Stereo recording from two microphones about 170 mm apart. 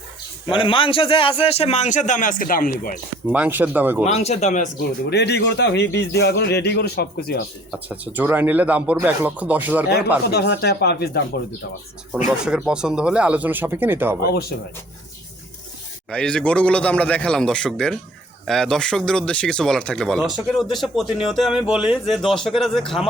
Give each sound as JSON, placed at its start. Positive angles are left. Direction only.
{"t": 0.5, "sound": "a man's voice", "side_deg": 30}
{"t": 3.3, "sound": "speech", "side_deg": -10}
{"t": 4.0, "sound": "a man's voice", "side_deg": 40}
{"t": 5.0, "sound": "a man's voice", "side_deg": 80}
{"t": 7.7, "sound": "speech", "side_deg": -10}
{"t": 10.3, "sound": "speech", "side_deg": 80}
{"t": 12.5, "sound": "speech", "side_deg": -5}
{"t": 16.0, "sound": "speech", "side_deg": 5}